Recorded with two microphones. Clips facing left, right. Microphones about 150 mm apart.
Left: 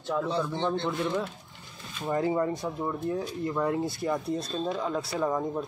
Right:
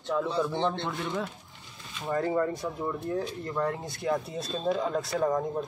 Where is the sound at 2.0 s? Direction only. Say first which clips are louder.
Left 1 dB; 20° left (ahead or behind).